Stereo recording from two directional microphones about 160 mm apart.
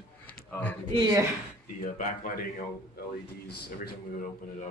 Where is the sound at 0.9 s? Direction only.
25° right (ahead or behind).